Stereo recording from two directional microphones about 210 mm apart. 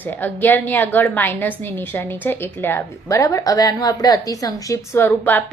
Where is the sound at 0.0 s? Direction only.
10° left (ahead or behind).